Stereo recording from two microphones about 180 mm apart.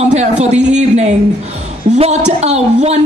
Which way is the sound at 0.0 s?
40° right (ahead or behind).